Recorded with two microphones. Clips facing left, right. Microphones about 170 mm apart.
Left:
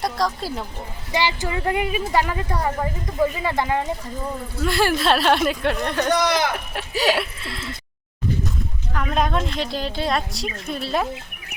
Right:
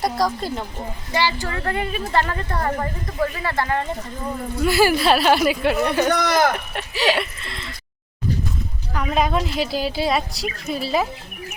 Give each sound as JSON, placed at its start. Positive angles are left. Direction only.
{"t": 0.0, "sound": "a woman's voice", "side_deg": 0}
{"t": 1.1, "sound": "speech", "side_deg": 15}
{"t": 4.6, "sound": "a woman's voice", "side_deg": -5}
{"t": 6.1, "sound": "speech", "side_deg": -55}
{"t": 7.0, "sound": "a sound", "side_deg": 0}
{"t": 8.9, "sound": "a woman's voice", "side_deg": -5}